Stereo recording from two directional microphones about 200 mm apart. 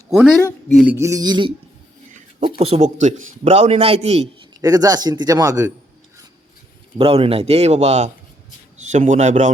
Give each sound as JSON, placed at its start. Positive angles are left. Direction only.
{"t": 0.7, "sound": "a sound", "side_deg": 0}
{"t": 0.9, "sound": "speech", "side_deg": -15}
{"t": 2.6, "sound": "a man's voice", "side_deg": -30}
{"t": 4.6, "sound": "speech", "side_deg": -20}
{"t": 7.0, "sound": "a man's voice", "side_deg": -30}